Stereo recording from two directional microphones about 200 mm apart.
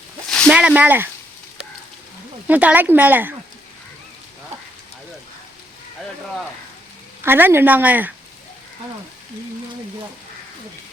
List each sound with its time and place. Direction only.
0.3 s a sound: 5° left (ahead or behind)
2.5 s speech: 10° right (ahead or behind)
7.2 s speech: 10° right (ahead or behind)